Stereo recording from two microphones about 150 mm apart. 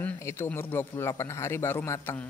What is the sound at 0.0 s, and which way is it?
A man's voice, 15° left (ahead or behind).